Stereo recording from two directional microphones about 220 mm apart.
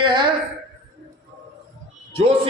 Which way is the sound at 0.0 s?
20° right (ahead or behind).